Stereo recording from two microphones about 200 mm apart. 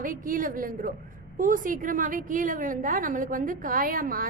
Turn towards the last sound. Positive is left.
turn(degrees=-45)  # may be behind; listen again after turning